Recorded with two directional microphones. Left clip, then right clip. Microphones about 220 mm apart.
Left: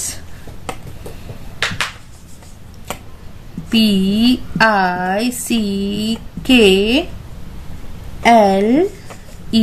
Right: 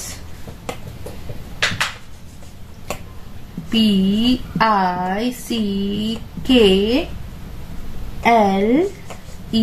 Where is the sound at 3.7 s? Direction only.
45° left (ahead or behind).